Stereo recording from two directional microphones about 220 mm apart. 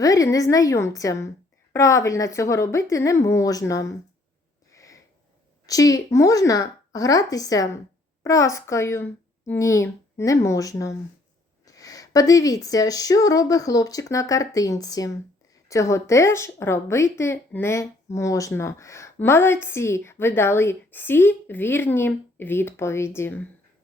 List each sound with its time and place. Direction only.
0.0 s speech: 15° left (ahead or behind)
4.7 s sniff: 15° left (ahead or behind)
5.6 s speech: 15° left (ahead or behind)